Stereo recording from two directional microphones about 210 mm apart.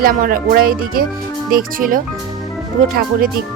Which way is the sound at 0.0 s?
40° right (ahead or behind).